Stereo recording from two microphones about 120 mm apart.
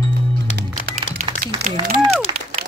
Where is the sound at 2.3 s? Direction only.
40° right (ahead or behind).